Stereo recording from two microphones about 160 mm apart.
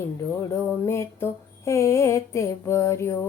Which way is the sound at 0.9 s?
15° left (ahead or behind).